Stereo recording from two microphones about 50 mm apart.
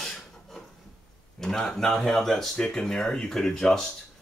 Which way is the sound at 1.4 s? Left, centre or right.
Centre.